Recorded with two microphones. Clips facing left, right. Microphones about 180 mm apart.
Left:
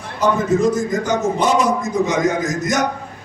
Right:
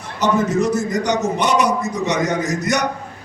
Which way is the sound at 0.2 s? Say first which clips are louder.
Left 1 dB; 70° right (ahead or behind).